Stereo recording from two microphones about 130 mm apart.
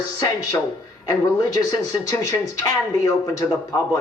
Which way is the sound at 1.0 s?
25° left (ahead or behind).